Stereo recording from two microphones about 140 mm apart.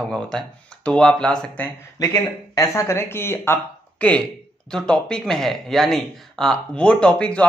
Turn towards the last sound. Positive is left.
turn(degrees=10)  # may be behind; listen again after turning